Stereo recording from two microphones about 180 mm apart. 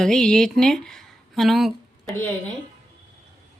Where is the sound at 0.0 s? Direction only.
5° left (ahead or behind).